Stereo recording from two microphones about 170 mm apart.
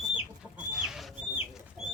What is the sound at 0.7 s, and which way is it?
Chicken, 5° right (ahead or behind).